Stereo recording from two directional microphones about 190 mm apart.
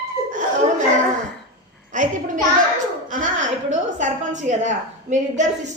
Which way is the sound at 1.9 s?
40° right (ahead or behind).